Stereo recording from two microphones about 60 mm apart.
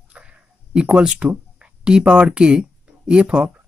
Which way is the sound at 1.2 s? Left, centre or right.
Centre.